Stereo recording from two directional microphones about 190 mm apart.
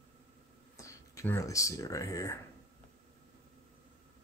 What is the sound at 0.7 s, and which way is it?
Speech, 15° left (ahead or behind).